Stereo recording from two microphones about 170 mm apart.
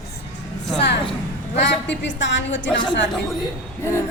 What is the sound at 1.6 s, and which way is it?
A woman's voice, 90° left.